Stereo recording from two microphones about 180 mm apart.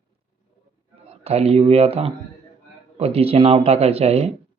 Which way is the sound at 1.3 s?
35° right (ahead or behind).